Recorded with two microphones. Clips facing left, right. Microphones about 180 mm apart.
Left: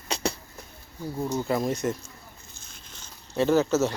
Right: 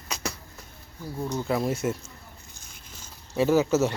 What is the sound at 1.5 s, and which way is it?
Speech, 5° right (ahead or behind).